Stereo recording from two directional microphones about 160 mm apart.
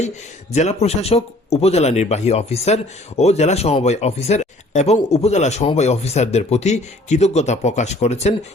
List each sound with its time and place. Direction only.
0.5 s speech: 45° left (ahead or behind)